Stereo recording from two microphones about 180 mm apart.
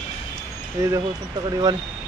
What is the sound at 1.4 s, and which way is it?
Speech, 20° right (ahead or behind).